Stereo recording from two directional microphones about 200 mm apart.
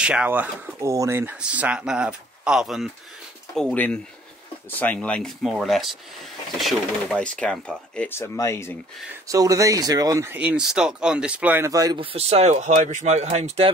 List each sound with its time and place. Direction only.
0.0 s speech: 5° right (ahead or behind); by 8.7 s 15° left (ahead or behind)
9.3 s speech: 15° right (ahead or behind); by 13.7 s 35° right (ahead or behind)